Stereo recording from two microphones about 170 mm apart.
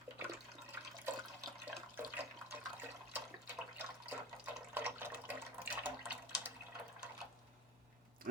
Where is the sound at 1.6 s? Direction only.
10° right (ahead or behind).